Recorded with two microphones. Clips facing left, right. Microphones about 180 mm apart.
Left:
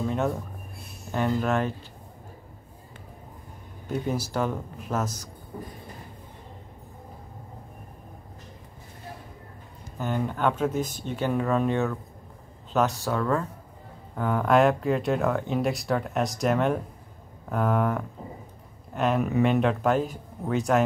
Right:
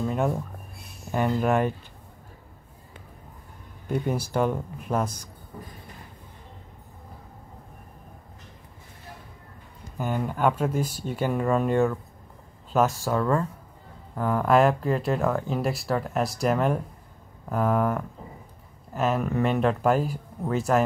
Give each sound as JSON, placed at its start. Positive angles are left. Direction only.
{"t": 1.1, "sound": "speech", "side_deg": -10}
{"t": 4.3, "sound": "speech", "side_deg": -10}
{"t": 9.9, "sound": "speech", "side_deg": -10}